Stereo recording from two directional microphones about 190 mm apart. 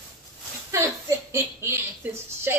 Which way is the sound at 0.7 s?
15° right (ahead or behind).